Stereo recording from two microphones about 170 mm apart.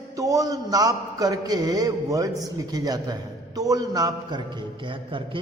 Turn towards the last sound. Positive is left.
turn(degrees=-30)  # may be behind; listen again after turning